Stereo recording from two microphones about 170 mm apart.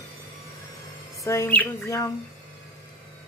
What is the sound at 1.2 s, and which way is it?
Speech, 15° left (ahead or behind).